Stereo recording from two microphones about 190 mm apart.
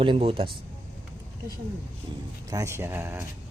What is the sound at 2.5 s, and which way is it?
Speech, 15° right (ahead or behind).